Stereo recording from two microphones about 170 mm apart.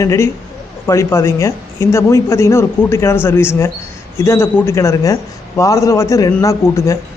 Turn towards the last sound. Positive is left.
turn(degrees=20)  # may be behind; listen again after turning